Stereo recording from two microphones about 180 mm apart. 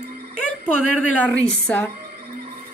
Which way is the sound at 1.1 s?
10° left (ahead or behind).